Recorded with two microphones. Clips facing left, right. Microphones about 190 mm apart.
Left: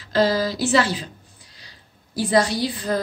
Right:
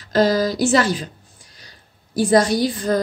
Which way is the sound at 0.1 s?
45° right (ahead or behind).